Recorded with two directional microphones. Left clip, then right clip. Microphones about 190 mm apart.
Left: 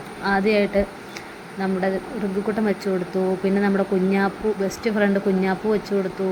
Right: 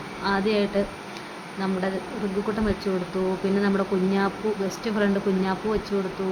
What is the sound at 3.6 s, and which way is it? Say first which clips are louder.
Speech: left 3 dB; 20° left (ahead or behind).